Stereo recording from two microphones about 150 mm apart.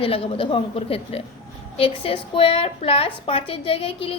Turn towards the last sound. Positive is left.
turn(degrees=40)  # may be behind; listen again after turning